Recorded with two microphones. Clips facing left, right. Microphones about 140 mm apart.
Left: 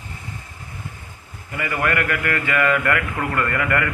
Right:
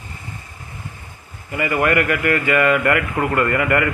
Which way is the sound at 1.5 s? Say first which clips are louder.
Right 5 dB; 15° right (ahead or behind).